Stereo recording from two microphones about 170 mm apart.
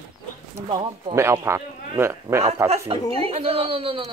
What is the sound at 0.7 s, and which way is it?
Speech, 30° right (ahead or behind).